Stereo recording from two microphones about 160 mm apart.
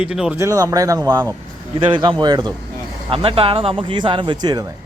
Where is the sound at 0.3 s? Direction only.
20° right (ahead or behind).